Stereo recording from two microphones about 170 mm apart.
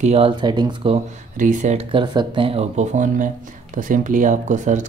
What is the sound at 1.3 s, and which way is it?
Speech, 50° right (ahead or behind).